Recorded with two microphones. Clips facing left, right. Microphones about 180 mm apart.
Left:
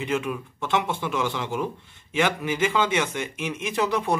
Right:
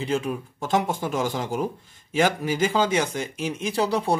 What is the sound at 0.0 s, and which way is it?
Speech, 35° right (ahead or behind).